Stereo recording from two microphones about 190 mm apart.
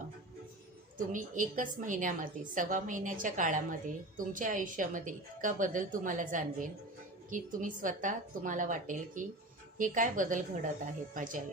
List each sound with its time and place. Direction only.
0.9 s a woman's voice: 45° right (ahead or behind)